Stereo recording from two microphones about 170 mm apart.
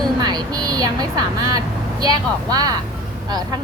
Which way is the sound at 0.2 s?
25° right (ahead or behind).